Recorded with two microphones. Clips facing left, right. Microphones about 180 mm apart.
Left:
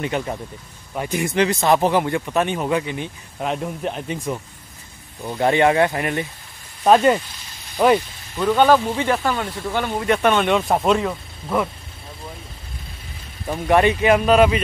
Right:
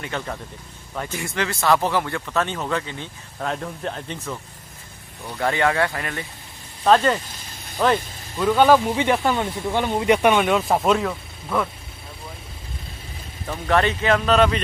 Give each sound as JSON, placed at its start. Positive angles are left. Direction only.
{"t": 0.0, "sound": "speech", "side_deg": 20}
{"t": 8.4, "sound": "speech", "side_deg": 0}
{"t": 11.4, "sound": "speech", "side_deg": 10}
{"t": 13.5, "sound": "speech", "side_deg": 15}